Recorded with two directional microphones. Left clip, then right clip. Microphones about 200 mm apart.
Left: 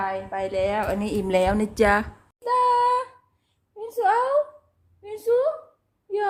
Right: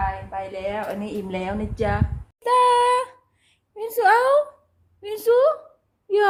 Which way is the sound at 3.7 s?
40° right (ahead or behind).